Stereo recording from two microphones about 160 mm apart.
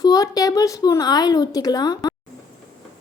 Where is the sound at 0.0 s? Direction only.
25° left (ahead or behind).